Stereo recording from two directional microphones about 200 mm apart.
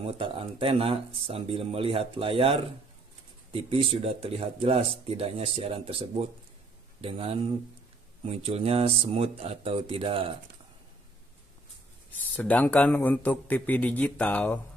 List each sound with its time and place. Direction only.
0.0 s speech: 25° right (ahead or behind)
12.4 s a man's voice: 5° left (ahead or behind)